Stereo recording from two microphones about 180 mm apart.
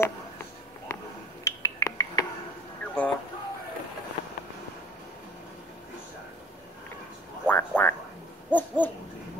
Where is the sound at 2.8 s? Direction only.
10° left (ahead or behind).